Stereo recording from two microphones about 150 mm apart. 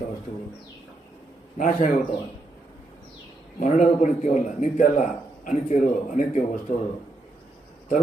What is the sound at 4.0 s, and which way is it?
A man's voice, 55° left (ahead or behind).